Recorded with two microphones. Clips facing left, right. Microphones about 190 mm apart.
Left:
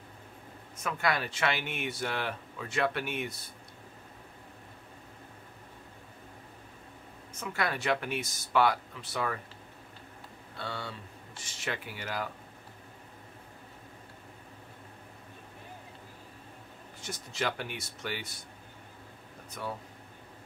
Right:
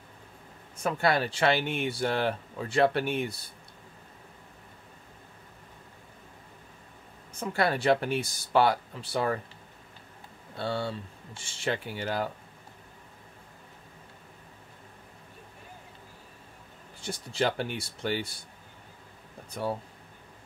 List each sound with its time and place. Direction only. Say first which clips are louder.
0.8 s speech: right 5 dB; 30° right (ahead or behind)
7.3 s speech: right 6 dB; 30° right (ahead or behind)
10.6 s speech: right 8 dB; 30° right (ahead or behind)
17.0 s speech: right 5 dB; 30° right (ahead or behind)
19.5 s speech: right 7 dB; 30° right (ahead or behind)